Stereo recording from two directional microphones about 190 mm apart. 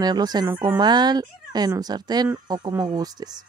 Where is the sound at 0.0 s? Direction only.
20° right (ahead or behind).